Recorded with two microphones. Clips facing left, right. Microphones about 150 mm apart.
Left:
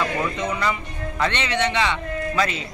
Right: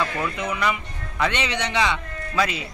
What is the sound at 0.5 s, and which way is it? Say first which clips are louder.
A man's voice: even; 10° right (ahead or behind).